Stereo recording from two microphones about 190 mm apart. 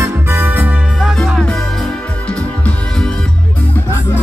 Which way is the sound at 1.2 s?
5° left (ahead or behind).